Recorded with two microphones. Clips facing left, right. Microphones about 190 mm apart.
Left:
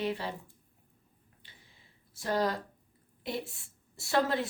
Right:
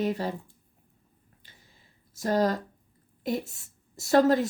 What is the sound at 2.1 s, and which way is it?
A woman's voice, 40° right (ahead or behind).